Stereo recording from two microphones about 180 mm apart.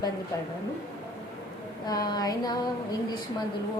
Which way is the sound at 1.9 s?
20° left (ahead or behind).